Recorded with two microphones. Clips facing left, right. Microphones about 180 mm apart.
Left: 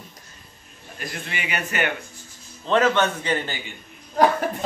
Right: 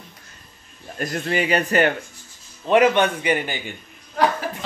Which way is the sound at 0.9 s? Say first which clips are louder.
Right 10 dB; 45° right (ahead or behind).